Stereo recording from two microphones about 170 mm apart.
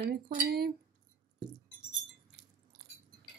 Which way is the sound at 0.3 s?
65° right (ahead or behind).